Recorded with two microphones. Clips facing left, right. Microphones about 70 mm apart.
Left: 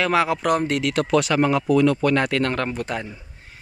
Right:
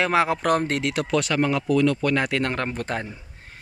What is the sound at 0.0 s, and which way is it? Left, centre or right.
Speech, right.